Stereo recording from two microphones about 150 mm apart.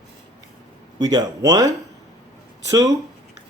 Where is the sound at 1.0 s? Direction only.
25° right (ahead or behind).